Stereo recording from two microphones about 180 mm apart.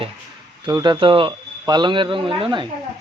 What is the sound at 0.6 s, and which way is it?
A man's voice, 25° right (ahead or behind).